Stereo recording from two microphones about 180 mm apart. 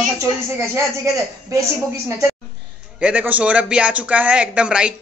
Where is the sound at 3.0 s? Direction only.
5° right (ahead or behind).